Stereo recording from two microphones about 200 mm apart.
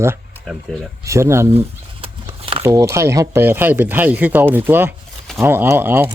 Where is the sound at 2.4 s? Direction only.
30° right (ahead or behind).